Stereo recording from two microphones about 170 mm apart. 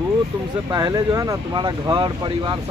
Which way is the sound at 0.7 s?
20° right (ahead or behind).